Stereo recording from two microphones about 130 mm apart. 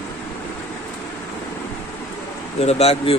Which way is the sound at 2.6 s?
50° left (ahead or behind).